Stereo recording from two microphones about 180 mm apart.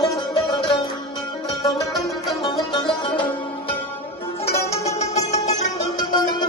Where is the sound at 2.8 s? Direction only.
25° left (ahead or behind).